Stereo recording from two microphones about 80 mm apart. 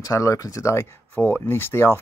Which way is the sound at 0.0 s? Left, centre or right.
Left.